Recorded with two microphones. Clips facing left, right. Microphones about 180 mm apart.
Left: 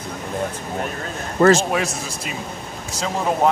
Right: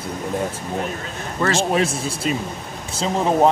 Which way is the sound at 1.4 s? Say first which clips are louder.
Left 7 dB; 45° left (ahead or behind).